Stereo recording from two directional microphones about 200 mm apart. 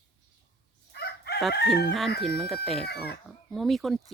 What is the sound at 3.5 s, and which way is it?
Speech, centre (ahead or behind).